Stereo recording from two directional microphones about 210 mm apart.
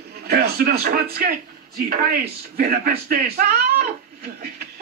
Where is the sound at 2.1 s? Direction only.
45° right (ahead or behind).